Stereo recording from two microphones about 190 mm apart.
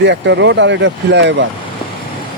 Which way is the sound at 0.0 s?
65° right (ahead or behind).